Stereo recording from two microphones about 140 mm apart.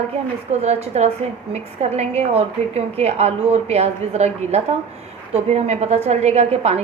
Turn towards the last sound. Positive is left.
turn(degrees=-50)  # may be behind; listen again after turning